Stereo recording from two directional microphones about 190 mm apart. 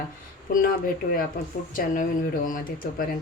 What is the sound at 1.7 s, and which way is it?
Speech, 45° left (ahead or behind).